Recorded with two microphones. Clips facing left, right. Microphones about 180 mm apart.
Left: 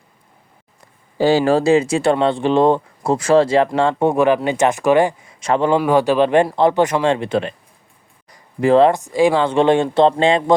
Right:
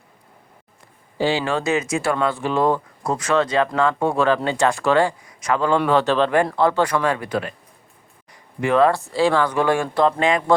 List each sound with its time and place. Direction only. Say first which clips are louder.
1.2 s speech: left 7 dB; 40° left (ahead or behind)
4.1 s speech: left 4 dB; 15° left (ahead or behind)
5.8 s speech: left 3 dB; 15° left (ahead or behind)
8.3 s a sound: left 6 dB; 30° left (ahead or behind)
8.9 s speech: left 4 dB; 15° left (ahead or behind)